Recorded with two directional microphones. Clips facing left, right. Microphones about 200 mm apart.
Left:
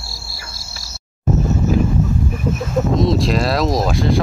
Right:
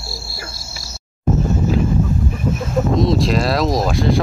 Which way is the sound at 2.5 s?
Centre (ahead or behind).